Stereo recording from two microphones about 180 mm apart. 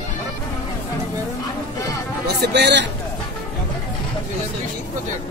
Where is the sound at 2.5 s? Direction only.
70° right (ahead or behind).